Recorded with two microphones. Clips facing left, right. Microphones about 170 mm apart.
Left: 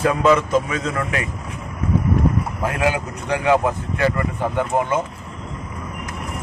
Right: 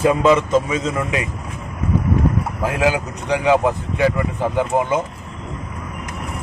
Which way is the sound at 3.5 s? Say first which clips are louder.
Right 1 dB; 20° right (ahead or behind).